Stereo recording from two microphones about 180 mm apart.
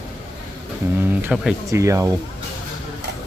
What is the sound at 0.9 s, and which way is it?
Speech, 10° right (ahead or behind).